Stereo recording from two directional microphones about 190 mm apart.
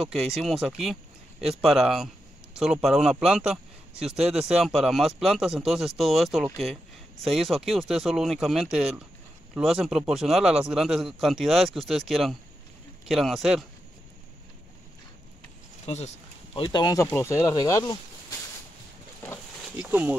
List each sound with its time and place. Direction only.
0.0 s speech: centre (ahead or behind)
15.8 s speech: 35° left (ahead or behind)
16.5 s speech: 20° left (ahead or behind)
19.8 s speech: 10° right (ahead or behind)